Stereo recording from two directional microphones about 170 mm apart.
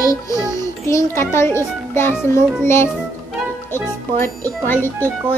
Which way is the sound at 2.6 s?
15° left (ahead or behind).